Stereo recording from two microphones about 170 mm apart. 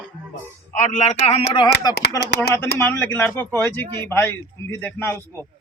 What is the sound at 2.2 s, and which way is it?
Speech, 70° left (ahead or behind).